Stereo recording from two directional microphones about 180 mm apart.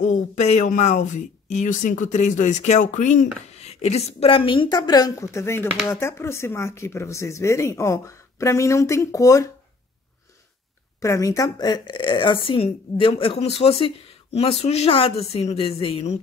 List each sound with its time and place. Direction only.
0.0 s speech: 40° left (ahead or behind); by 9.5 s 20° left (ahead or behind)
11.0 s speech: 20° left (ahead or behind); by 16.2 s 35° left (ahead or behind)